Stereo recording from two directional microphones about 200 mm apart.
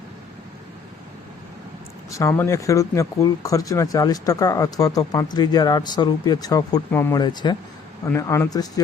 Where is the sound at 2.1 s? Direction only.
15° left (ahead or behind).